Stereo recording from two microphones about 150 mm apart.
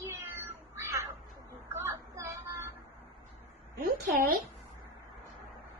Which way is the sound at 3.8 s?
70° right (ahead or behind).